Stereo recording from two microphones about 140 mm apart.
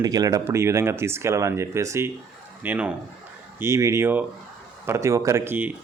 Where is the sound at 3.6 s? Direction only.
20° right (ahead or behind).